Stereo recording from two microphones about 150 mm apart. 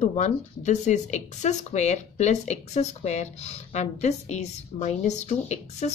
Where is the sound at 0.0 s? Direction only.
50° left (ahead or behind).